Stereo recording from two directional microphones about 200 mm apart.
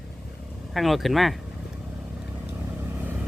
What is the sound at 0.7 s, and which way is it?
Speech, centre (ahead or behind).